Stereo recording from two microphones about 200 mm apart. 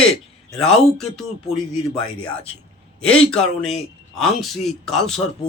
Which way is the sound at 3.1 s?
5° left (ahead or behind).